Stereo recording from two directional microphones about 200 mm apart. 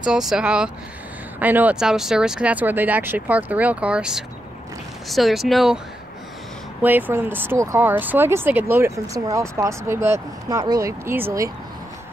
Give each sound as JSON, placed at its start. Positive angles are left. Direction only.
{"t": 0.0, "sound": "speech", "side_deg": -5}
{"t": 6.8, "sound": "speech", "side_deg": -10}